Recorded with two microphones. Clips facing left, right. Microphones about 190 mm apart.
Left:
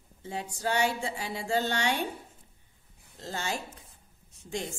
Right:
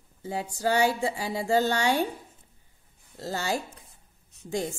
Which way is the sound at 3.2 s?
35° right (ahead or behind).